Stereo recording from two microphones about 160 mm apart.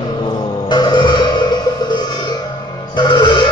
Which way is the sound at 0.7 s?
30° left (ahead or behind).